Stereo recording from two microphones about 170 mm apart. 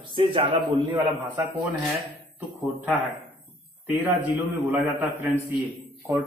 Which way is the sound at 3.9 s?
15° right (ahead or behind).